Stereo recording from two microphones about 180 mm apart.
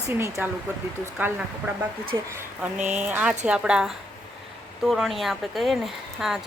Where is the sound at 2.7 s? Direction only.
10° right (ahead or behind).